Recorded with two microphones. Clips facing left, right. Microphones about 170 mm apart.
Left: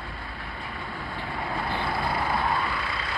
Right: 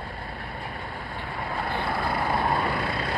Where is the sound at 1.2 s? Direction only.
50° right (ahead or behind).